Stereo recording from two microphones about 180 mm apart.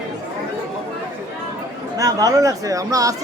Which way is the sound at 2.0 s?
20° right (ahead or behind).